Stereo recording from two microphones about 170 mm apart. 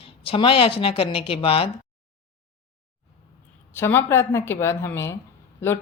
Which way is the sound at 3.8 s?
15° left (ahead or behind).